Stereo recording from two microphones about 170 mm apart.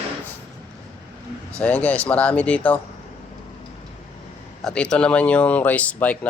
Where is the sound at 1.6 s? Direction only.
10° left (ahead or behind).